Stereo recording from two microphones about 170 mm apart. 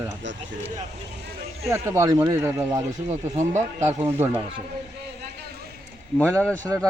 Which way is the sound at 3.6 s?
15° right (ahead or behind).